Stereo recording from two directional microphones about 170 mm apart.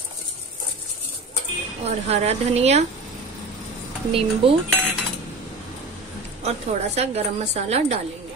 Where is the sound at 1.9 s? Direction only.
40° right (ahead or behind).